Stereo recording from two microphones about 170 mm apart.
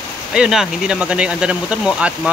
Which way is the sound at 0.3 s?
5° right (ahead or behind).